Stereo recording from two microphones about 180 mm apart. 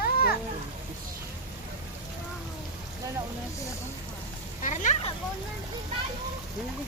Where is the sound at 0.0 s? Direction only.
55° left (ahead or behind).